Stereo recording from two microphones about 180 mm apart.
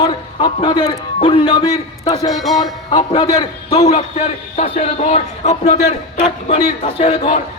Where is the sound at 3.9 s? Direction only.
40° left (ahead or behind).